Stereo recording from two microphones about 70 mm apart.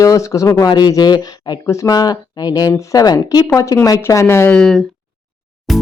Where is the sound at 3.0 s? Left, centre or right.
Left.